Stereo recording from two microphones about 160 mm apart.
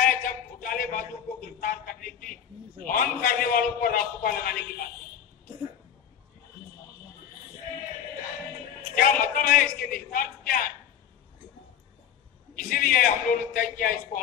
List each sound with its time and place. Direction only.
0.0 s a sound: 60° left (ahead or behind)
2.9 s a man's voice: 65° left (ahead or behind)
8.9 s a man's voice: 60° left (ahead or behind)
12.5 s a man's voice: 60° left (ahead or behind)